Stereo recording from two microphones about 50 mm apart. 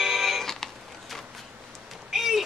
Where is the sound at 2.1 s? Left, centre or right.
Centre.